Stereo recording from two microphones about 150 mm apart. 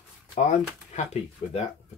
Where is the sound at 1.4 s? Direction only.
40° left (ahead or behind).